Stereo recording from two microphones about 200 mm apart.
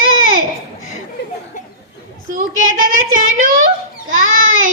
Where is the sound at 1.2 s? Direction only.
60° left (ahead or behind).